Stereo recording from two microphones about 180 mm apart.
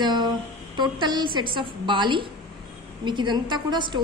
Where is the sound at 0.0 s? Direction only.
25° right (ahead or behind).